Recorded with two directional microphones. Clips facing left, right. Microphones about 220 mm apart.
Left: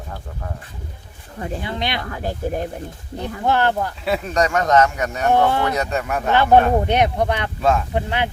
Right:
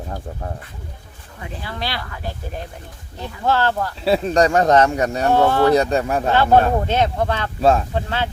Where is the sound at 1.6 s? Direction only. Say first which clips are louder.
Even; 20° left (ahead or behind).